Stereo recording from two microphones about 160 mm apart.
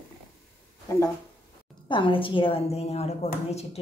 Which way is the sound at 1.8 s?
30° left (ahead or behind).